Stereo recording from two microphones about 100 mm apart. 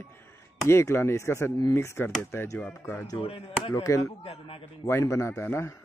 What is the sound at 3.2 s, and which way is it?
Speech, 70° left (ahead or behind).